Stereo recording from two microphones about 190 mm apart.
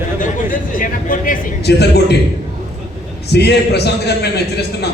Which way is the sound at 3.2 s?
60° left (ahead or behind).